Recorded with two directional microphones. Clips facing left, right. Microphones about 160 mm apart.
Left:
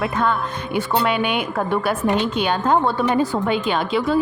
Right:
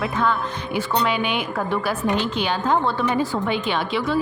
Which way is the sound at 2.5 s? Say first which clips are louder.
Left 3 dB; 50° left (ahead or behind).